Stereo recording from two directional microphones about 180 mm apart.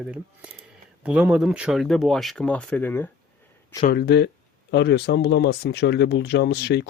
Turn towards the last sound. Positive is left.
turn(degrees=70)  # may be behind; listen again after turning